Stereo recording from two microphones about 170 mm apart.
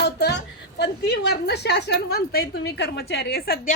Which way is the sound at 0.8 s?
80° left.